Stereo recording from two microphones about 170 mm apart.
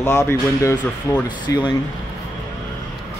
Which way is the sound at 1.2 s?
25° left (ahead or behind).